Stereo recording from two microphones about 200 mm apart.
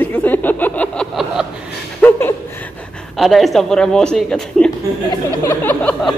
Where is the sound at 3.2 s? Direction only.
Centre (ahead or behind).